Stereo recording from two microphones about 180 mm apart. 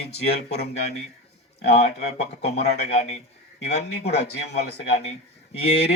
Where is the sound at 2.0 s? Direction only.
65° left (ahead or behind).